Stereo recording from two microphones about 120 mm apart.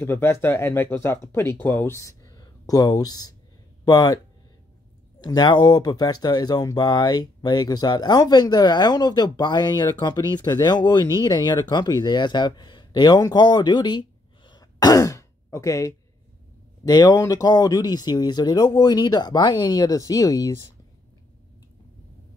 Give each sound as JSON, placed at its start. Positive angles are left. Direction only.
{"t": 0.0, "sound": "speech", "side_deg": 20}
{"t": 5.2, "sound": "speech", "side_deg": 35}